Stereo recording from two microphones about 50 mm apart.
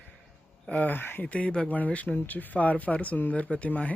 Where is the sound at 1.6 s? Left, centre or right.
Left.